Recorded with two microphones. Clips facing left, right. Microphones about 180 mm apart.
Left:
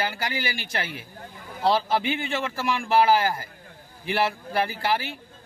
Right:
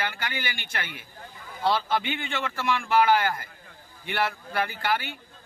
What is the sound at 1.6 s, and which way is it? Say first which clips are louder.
A man's voice: left 3 dB; 35° left (ahead or behind).